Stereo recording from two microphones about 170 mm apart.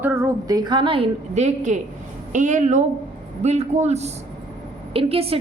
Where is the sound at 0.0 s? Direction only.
15° right (ahead or behind).